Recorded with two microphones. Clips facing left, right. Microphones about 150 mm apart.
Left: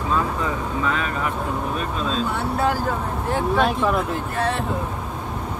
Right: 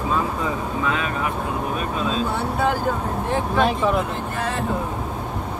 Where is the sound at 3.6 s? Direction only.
Centre (ahead or behind).